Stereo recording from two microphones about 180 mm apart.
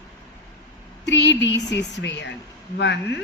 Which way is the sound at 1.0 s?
75° left (ahead or behind).